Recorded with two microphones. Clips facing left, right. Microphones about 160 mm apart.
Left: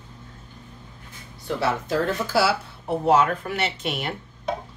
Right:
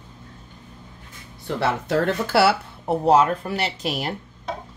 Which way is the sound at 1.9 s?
65° right (ahead or behind).